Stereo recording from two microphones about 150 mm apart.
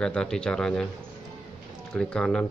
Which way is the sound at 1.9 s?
5° left (ahead or behind).